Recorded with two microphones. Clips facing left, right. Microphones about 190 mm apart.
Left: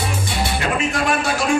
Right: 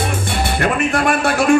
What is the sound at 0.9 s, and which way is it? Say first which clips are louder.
Speech: right 4 dB; 60° right (ahead or behind).